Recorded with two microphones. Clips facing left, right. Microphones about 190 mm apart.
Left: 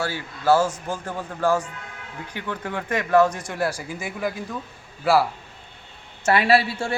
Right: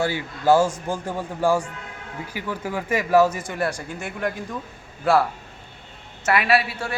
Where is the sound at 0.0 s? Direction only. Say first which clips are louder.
Right 3 dB; 15° right (ahead or behind); by 4.4 s 5° left (ahead or behind).